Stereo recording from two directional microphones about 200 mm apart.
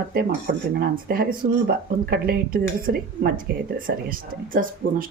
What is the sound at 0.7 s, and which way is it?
A woman's voice, 50° right (ahead or behind).